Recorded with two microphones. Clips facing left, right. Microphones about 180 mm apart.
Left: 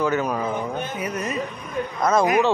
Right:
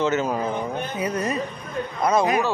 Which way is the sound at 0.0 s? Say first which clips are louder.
Even; 25° right (ahead or behind).